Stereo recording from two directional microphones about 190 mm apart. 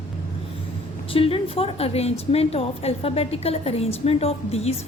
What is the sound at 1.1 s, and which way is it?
A woman's voice, 30° left (ahead or behind).